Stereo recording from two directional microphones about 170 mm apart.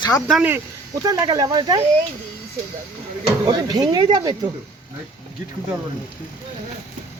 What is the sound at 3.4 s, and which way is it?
Speech, 25° right (ahead or behind).